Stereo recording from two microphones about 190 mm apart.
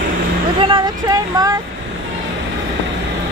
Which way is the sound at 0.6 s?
20° right (ahead or behind).